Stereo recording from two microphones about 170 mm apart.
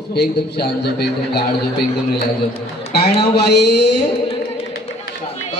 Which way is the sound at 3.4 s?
75° left (ahead or behind).